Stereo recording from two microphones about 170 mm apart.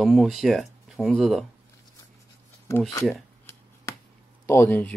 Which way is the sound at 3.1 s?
15° left (ahead or behind).